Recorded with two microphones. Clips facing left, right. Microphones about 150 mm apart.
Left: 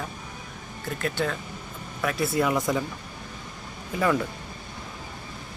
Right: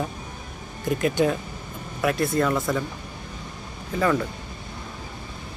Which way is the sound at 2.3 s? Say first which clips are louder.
Right 1 dB; 15° left (ahead or behind).